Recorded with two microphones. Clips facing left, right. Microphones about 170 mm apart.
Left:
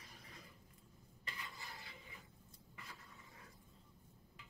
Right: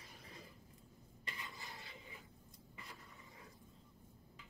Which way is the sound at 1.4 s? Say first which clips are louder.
Right 1 dB; 20° right (ahead or behind).